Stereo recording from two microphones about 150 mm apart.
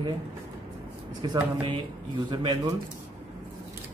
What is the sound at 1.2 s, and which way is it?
Speech, 30° right (ahead or behind).